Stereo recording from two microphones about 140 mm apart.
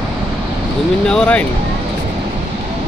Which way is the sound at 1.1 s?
5° left (ahead or behind).